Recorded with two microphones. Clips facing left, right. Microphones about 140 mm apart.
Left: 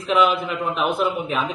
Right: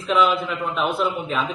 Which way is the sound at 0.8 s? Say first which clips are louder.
Left 1 dB; 10° left (ahead or behind).